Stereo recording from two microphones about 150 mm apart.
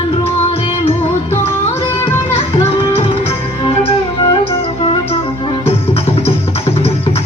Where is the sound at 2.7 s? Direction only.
40° left (ahead or behind).